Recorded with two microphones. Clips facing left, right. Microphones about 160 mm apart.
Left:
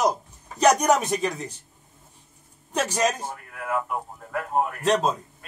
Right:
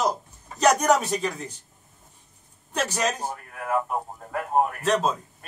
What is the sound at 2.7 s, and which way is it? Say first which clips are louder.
Speech: left 2 dB; 10° left (ahead or behind).